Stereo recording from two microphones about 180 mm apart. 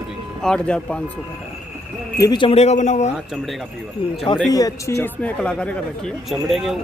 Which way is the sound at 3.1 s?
Centre (ahead or behind).